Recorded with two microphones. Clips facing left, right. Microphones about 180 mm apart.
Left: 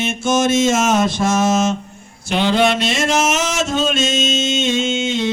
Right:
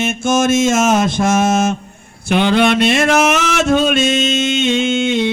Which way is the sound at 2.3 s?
55° right (ahead or behind).